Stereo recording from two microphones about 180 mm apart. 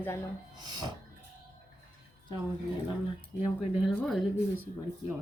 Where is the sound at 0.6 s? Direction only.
20° right (ahead or behind).